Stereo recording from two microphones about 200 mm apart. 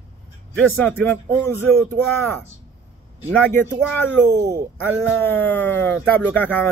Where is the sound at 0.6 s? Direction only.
5° left (ahead or behind).